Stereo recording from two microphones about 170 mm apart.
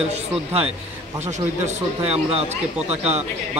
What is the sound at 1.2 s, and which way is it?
A man's voice, 45° right (ahead or behind).